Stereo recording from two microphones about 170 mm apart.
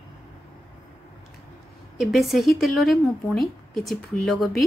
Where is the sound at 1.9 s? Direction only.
Centre (ahead or behind).